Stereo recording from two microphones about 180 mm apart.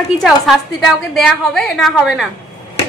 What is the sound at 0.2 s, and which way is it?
A woman's voice, centre (ahead or behind).